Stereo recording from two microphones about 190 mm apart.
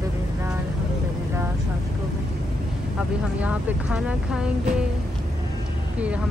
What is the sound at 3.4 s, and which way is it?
Speech, 5° right (ahead or behind).